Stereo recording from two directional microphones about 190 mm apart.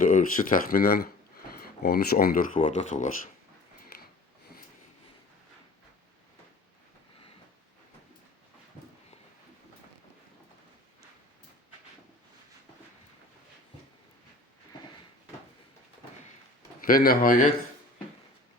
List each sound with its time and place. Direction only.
0.0 s speech: 45° left (ahead or behind)
16.8 s speech: 50° left (ahead or behind)